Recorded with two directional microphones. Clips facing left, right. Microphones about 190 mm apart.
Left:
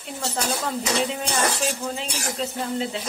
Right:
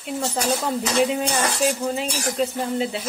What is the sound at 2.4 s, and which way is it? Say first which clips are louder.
Speech: right 7 dB; 15° right (ahead or behind).